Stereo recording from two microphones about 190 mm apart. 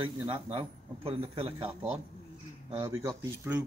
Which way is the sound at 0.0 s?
25° right (ahead or behind).